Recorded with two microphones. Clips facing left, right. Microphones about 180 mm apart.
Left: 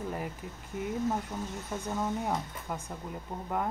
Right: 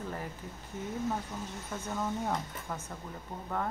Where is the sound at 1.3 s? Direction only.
15° left (ahead or behind).